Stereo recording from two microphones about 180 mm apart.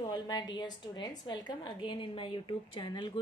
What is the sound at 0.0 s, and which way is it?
A woman's voice, 25° left (ahead or behind).